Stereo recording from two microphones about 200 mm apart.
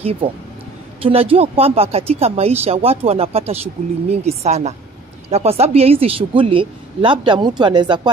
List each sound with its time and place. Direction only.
1.0 s speech: 30° right (ahead or behind)